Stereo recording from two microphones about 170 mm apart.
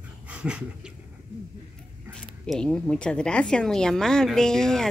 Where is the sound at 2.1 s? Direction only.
5° left (ahead or behind).